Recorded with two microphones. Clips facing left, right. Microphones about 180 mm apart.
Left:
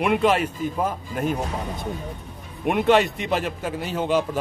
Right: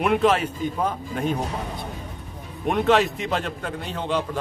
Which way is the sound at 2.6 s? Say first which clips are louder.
Left 1 dB; centre (ahead or behind).